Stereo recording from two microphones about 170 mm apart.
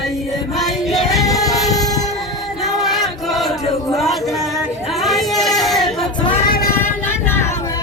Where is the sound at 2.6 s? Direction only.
Centre (ahead or behind).